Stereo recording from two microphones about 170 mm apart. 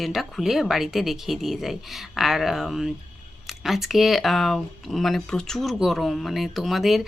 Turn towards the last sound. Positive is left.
turn(degrees=0)  # may be behind; listen again after turning